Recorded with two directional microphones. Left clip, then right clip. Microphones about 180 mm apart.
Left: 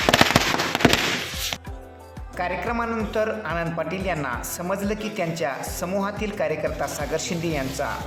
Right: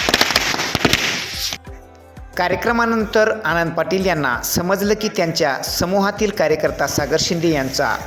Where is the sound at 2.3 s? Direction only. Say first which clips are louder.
Right 8 dB; 40° right (ahead or behind).